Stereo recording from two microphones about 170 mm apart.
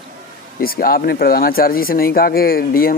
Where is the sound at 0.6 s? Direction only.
60° left (ahead or behind).